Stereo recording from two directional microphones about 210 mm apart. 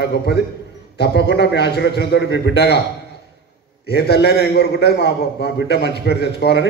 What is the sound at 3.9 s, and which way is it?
A man's voice, 50° left (ahead or behind).